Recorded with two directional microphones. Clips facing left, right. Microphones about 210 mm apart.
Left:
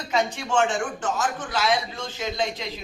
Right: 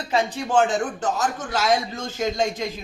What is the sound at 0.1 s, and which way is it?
A man's voice, 35° right (ahead or behind).